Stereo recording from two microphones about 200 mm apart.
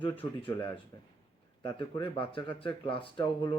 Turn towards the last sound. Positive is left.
turn(degrees=25)  # may be behind; listen again after turning